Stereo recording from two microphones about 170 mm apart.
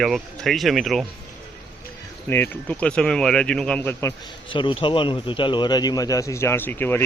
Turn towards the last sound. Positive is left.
turn(degrees=10)  # may be behind; listen again after turning